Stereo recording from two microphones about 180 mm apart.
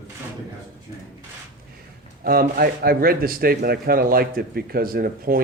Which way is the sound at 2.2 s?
55° right (ahead or behind).